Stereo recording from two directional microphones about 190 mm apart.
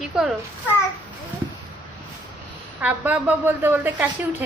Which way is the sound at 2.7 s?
10° right (ahead or behind).